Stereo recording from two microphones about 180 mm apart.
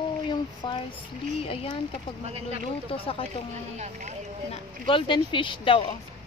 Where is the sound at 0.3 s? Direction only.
25° left (ahead or behind).